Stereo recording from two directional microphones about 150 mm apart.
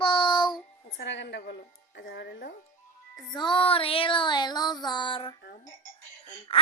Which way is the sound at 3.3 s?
35° left (ahead or behind).